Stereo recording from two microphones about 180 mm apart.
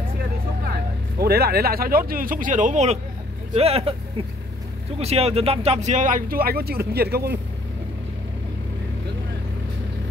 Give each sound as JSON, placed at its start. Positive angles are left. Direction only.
{"t": 1.2, "sound": "speech", "side_deg": -60}
{"t": 4.9, "sound": "speech", "side_deg": -35}